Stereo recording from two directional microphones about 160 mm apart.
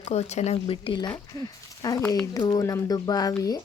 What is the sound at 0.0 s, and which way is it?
Speech, 40° left (ahead or behind).